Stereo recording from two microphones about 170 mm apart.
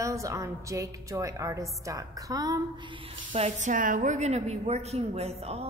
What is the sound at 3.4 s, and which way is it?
A woman's voice, 40° right (ahead or behind).